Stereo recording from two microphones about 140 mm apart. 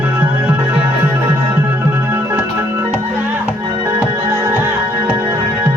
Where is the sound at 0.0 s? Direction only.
10° right (ahead or behind).